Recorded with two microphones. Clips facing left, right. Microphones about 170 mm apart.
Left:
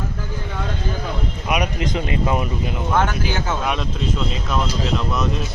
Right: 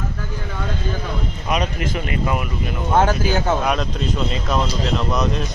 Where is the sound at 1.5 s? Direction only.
10° left (ahead or behind).